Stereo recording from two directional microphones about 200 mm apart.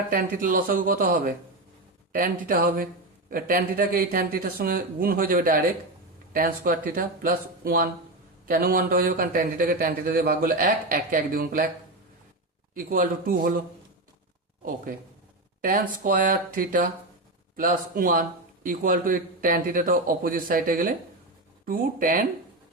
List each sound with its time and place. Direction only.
0.1 s speech: 45° right (ahead or behind)
12.7 s speech: 45° right (ahead or behind)
15.6 s speech: 45° right (ahead or behind)